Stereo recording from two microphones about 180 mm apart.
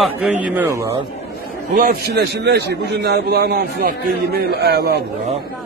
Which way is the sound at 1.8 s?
60° right (ahead or behind).